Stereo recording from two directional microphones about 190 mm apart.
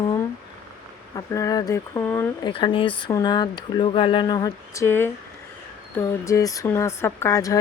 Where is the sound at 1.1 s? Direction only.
20° left (ahead or behind).